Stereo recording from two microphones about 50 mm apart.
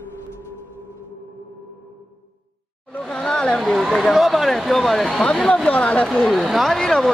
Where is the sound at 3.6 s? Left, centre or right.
Centre.